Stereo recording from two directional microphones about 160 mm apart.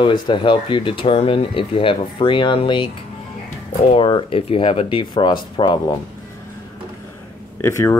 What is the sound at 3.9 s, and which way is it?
Speech, 35° left (ahead or behind).